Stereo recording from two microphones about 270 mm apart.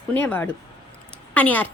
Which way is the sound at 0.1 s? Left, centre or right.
Centre.